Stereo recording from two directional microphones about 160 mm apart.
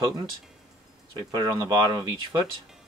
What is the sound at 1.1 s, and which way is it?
Speech, 25° right (ahead or behind).